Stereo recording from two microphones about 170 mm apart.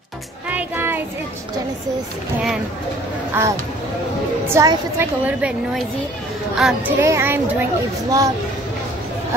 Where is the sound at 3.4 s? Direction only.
10° right (ahead or behind).